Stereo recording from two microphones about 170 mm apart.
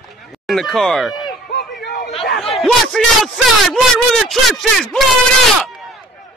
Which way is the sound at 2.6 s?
Centre (ahead or behind).